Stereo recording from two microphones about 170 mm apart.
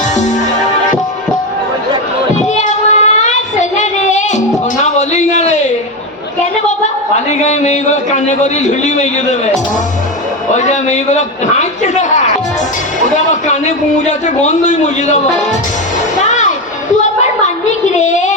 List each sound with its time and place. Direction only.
2.6 s child singing: 45° left (ahead or behind)
4.8 s a sound: 45° left (ahead or behind)
7.3 s a sound: 45° left (ahead or behind)
10.5 s a man's voice: 45° left (ahead or behind)
13.5 s a man's voice: 45° left (ahead or behind)
16.1 s music: 45° left (ahead or behind)
17.4 s child singing: 45° left (ahead or behind)